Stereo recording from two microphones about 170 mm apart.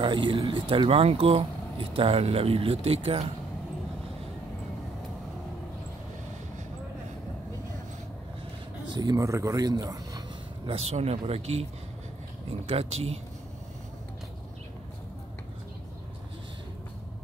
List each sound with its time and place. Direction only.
0.0 s speech: 30° right (ahead or behind)
8.9 s speech: 20° right (ahead or behind)
10.7 s speech: 40° right (ahead or behind)
12.6 s speech: 35° right (ahead or behind)